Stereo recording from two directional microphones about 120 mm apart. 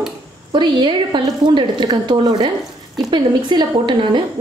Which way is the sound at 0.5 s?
40° right (ahead or behind).